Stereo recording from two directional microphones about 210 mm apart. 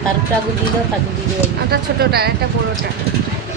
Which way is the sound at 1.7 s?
50° right (ahead or behind).